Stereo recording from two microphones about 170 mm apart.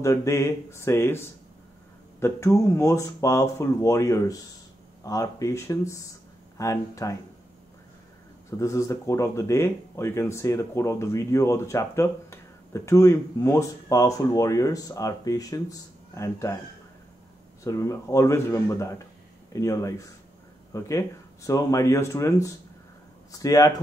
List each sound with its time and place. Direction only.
0.0 s speech: 20° left (ahead or behind)
8.5 s speech: 20° left (ahead or behind)
17.6 s speech: 20° left (ahead or behind)